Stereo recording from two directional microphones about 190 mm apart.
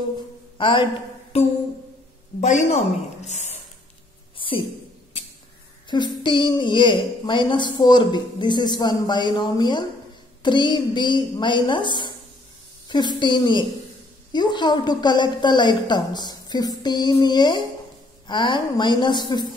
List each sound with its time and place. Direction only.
0.6 s a man's voice: 25° left (ahead or behind)
2.4 s a woman's voice: 40° left (ahead or behind)
4.4 s a sound: 25° left (ahead or behind)
6.2 s speech: 25° left (ahead or behind)